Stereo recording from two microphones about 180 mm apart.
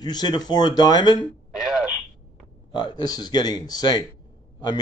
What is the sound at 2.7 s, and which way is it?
A man's voice, 25° left (ahead or behind).